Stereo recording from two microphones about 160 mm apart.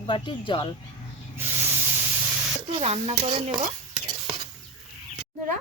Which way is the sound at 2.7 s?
40° right (ahead or behind).